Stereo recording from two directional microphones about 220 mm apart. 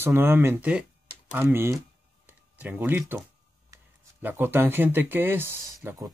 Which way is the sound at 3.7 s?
10° right (ahead or behind).